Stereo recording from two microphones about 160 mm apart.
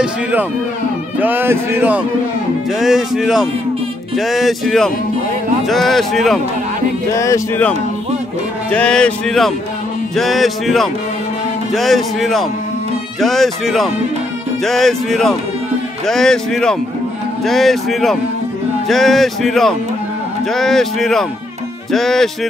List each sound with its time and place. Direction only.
0.0 s a man's voice: 10° right (ahead or behind)
7.2 s speech: 20° left (ahead or behind); by 22.5 s centre (ahead or behind)